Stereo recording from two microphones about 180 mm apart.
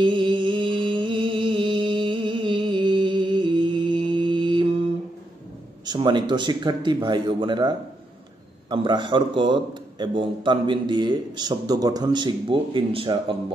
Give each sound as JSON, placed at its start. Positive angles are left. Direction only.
{"t": 0.0, "sound": "music", "side_deg": -25}
{"t": 5.9, "sound": "a man's voice", "side_deg": -25}